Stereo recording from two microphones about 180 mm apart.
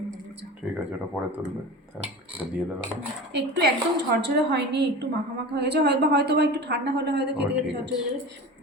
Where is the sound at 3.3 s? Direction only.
70° right (ahead or behind).